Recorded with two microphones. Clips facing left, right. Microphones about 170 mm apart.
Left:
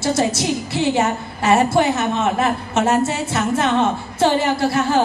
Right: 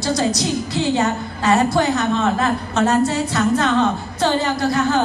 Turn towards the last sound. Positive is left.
turn(degrees=25)  # may be behind; listen again after turning